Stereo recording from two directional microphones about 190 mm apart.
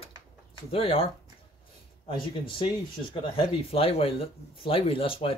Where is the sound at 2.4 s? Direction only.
25° left (ahead or behind).